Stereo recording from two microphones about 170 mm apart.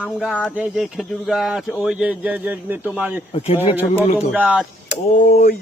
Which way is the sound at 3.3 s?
35° left (ahead or behind).